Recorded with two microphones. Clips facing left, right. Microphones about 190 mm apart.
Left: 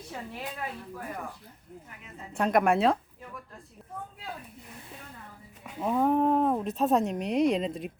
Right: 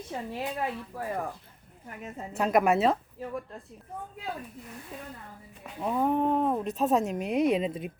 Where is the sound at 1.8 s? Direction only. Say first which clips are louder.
Right 9 dB; 50° right (ahead or behind).